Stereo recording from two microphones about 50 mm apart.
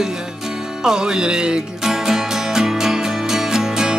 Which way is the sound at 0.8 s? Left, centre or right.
Centre.